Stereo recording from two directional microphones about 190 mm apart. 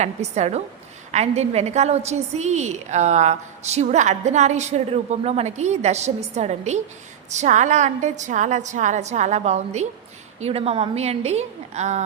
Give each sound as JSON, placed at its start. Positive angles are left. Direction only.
{"t": 0.0, "sound": "a woman's voice", "side_deg": -35}